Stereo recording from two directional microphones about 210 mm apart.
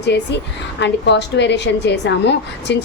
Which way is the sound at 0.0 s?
55° left (ahead or behind).